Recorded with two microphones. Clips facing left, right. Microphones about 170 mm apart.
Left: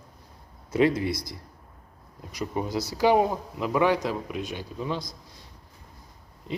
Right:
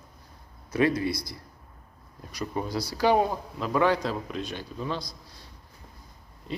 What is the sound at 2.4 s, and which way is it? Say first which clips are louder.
Speech: left 2 dB; 20° left (ahead or behind).